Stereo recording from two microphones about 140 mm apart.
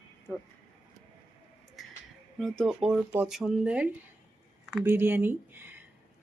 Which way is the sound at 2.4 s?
Centre (ahead or behind).